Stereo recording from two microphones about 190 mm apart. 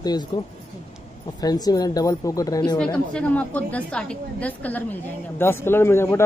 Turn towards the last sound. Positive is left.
turn(degrees=15)  # may be behind; listen again after turning